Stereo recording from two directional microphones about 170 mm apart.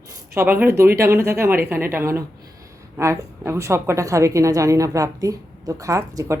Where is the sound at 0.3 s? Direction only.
10° right (ahead or behind).